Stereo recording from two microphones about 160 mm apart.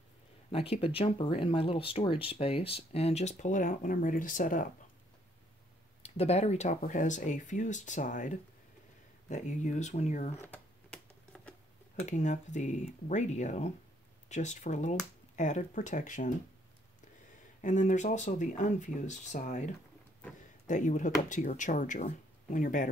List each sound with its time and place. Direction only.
0.5 s speech: 35° left (ahead or behind); by 4.6 s 55° left (ahead or behind)
6.0 s speech: 40° left (ahead or behind)
10.3 s computer keyboard: 10° left (ahead or behind)
12.0 s speech: 50° left (ahead or behind)
17.6 s speech: 50° left (ahead or behind)